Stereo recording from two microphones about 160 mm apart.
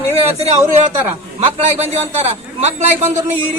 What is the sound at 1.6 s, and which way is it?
Speech, 40° right (ahead or behind).